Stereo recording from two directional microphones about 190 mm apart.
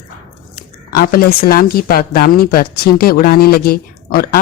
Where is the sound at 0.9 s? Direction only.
50° left (ahead or behind).